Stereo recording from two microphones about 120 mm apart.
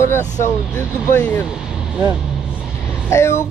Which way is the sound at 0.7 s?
20° left (ahead or behind).